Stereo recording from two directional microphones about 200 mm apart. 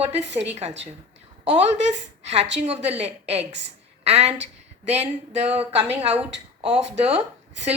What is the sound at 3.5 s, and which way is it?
Speech, 60° right (ahead or behind).